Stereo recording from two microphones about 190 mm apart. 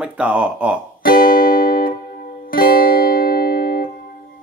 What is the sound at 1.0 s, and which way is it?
Music, 50° left (ahead or behind).